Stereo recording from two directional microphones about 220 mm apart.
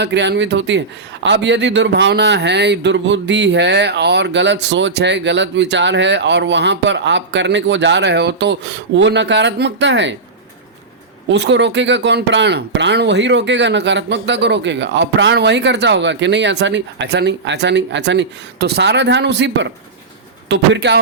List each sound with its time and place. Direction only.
0.0 s a man's voice: 50° right (ahead or behind)
11.3 s a man's voice: 55° right (ahead or behind)